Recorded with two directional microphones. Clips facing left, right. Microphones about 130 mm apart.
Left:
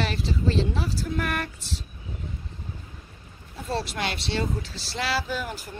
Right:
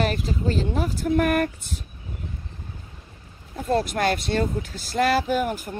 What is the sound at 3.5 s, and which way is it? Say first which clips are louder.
Speech: right 7 dB; 50° right (ahead or behind).